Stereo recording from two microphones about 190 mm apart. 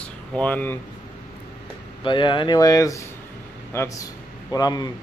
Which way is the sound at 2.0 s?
25° left (ahead or behind).